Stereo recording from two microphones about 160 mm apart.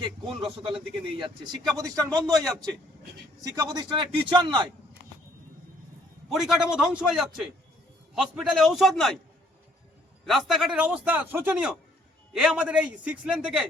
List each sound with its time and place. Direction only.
0.4 s a man's voice: 35° right (ahead or behind)
1.7 s a man's voice: 20° right (ahead or behind)
2.3 s a man's voice: centre (ahead or behind)
3.4 s a man's voice: 20° right (ahead or behind)
6.2 s a man's voice: centre (ahead or behind)
10.2 s a man's voice: centre (ahead or behind)